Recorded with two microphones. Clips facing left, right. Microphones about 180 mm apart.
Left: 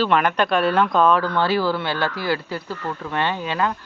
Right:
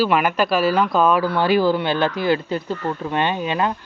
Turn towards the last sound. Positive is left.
turn(degrees=-20)  # may be behind; listen again after turning